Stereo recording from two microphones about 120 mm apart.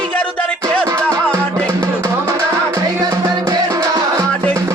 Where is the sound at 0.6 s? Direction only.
30° right (ahead or behind).